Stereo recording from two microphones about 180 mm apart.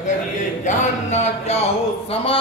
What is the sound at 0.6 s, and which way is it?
Music, 40° left (ahead or behind).